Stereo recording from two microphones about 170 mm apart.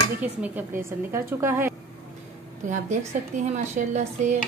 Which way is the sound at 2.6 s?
45° right (ahead or behind).